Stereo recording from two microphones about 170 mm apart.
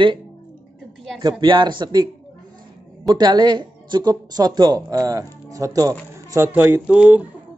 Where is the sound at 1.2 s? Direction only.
25° right (ahead or behind).